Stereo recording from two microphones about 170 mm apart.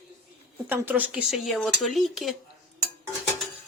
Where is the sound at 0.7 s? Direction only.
10° right (ahead or behind).